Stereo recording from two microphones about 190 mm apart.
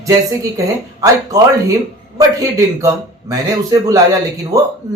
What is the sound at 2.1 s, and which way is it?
A man's voice, 15° right (ahead or behind).